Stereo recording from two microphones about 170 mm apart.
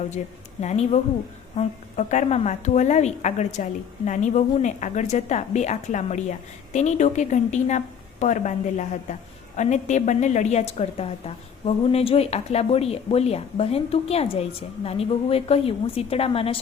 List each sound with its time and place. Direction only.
0.6 s a woman's voice: 40° left (ahead or behind)